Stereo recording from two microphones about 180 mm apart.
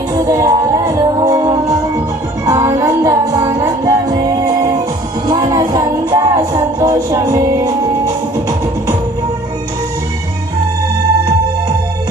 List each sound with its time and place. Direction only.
0.3 s music: 20° right (ahead or behind)